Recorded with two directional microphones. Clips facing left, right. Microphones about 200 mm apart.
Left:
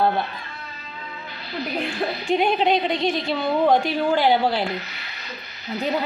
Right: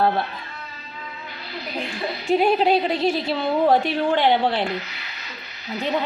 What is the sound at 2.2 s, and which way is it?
A woman's voice, 5° right (ahead or behind).